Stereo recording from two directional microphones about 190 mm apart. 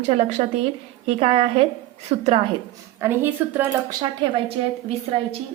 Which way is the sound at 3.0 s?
10° right (ahead or behind).